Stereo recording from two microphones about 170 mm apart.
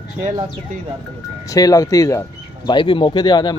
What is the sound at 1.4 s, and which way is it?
Speech, 20° left (ahead or behind).